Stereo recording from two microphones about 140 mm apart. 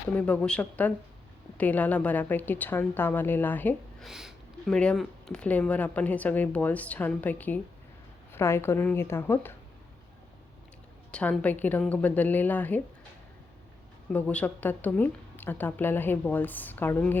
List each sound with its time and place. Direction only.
0.1 s speech: 10° left (ahead or behind)
4.0 s speech: 5° right (ahead or behind); by 9.6 s 15° left (ahead or behind)
11.1 s speech: 10° left (ahead or behind)
14.1 s speech: 10° left (ahead or behind)